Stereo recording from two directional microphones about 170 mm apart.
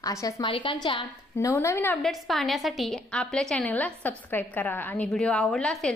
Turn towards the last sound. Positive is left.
turn(degrees=0)  # may be behind; listen again after turning